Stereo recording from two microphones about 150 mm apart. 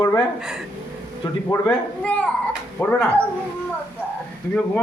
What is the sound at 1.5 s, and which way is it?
Speech, 25° left (ahead or behind).